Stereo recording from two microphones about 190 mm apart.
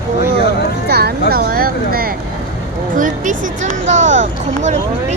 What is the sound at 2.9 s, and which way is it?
Speech, 45° right (ahead or behind).